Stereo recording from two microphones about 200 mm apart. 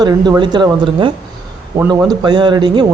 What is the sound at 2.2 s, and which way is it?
Speech, 20° right (ahead or behind).